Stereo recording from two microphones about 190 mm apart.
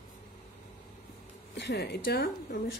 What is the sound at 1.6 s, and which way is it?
Speech, 65° left (ahead or behind).